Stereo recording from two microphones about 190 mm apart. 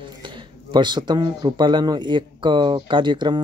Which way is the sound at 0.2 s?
25° right (ahead or behind).